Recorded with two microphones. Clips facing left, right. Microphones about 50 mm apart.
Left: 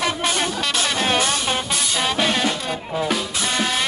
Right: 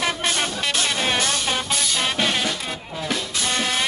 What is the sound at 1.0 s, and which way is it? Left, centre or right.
Music, centre.